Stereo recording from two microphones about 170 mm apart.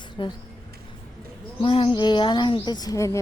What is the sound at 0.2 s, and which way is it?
Speech, 30° left (ahead or behind).